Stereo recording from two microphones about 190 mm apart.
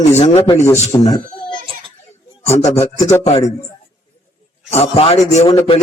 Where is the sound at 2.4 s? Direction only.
15° left (ahead or behind).